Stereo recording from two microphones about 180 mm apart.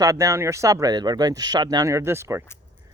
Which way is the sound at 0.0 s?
20° right (ahead or behind).